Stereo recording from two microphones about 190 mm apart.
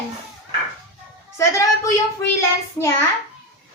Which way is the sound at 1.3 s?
15° left (ahead or behind).